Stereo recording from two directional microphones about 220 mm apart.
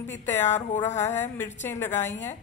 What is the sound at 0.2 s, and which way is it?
Speech, 10° left (ahead or behind).